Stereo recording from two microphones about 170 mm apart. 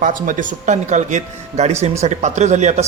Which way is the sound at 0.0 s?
50° right (ahead or behind).